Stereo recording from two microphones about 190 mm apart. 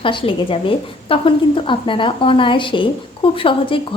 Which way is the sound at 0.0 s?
25° left (ahead or behind).